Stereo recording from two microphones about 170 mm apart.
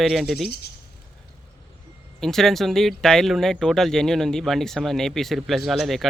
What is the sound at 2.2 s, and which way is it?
Speech, centre (ahead or behind).